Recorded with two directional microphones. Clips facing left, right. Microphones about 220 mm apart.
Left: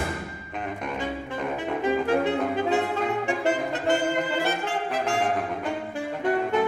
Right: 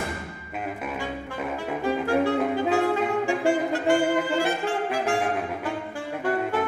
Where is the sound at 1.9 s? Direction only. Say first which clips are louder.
Even; 20° left (ahead or behind).